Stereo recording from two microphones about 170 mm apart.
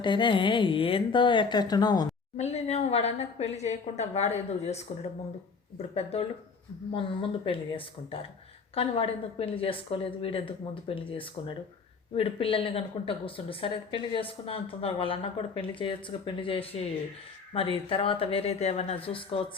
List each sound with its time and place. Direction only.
0.0 s a woman's voice: 30° left (ahead or behind)
2.4 s a woman's voice: 40° left (ahead or behind)
5.7 s a woman's voice: 35° left (ahead or behind)